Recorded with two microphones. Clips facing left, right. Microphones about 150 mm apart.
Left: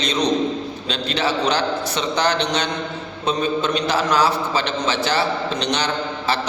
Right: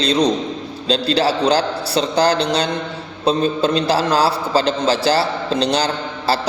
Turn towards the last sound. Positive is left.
turn(degrees=-35)  # may be behind; listen again after turning